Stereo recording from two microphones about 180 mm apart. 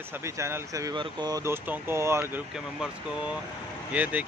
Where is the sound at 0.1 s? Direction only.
15° right (ahead or behind).